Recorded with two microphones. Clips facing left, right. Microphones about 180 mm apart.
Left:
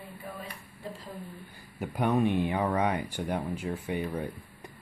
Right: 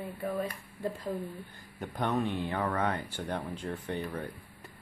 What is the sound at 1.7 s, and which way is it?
Speech, 10° left (ahead or behind).